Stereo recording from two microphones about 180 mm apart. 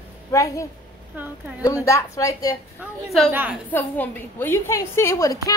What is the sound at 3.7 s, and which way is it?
A woman's voice, 10° left (ahead or behind).